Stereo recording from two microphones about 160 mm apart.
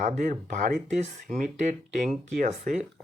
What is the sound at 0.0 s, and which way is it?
Speech, 55° right (ahead or behind).